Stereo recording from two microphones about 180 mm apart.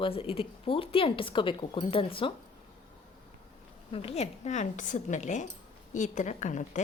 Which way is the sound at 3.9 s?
30° left (ahead or behind).